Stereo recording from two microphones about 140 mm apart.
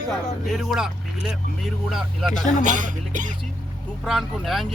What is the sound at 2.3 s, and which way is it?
Speech, 65° left (ahead or behind).